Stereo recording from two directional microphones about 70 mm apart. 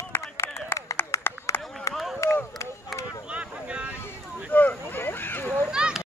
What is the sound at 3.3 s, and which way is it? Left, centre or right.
Boat, centre.